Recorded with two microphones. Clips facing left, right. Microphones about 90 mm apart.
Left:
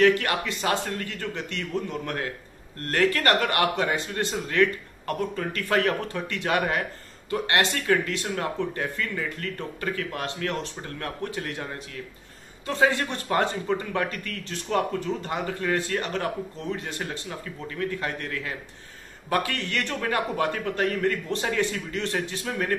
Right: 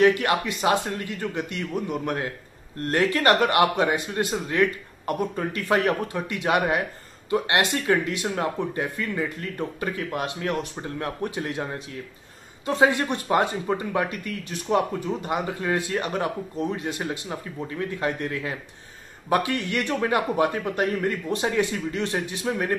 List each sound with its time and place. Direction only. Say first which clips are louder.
0.0 s speech: right 1 dB; 20° right (ahead or behind)
12.6 s speech: right 2 dB; 20° right (ahead or behind)